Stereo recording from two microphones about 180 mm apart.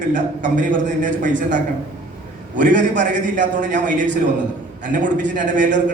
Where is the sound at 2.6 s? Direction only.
45° right (ahead or behind).